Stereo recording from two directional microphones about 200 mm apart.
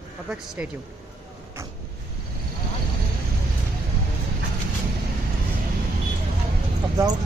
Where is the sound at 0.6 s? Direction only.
10° right (ahead or behind).